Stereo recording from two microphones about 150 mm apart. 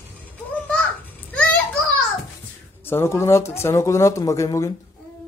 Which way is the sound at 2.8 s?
15° left (ahead or behind).